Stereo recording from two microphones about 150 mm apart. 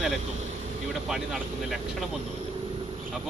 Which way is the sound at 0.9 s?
Centre (ahead or behind).